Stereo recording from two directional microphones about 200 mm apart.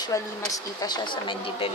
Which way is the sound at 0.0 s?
15° left (ahead or behind).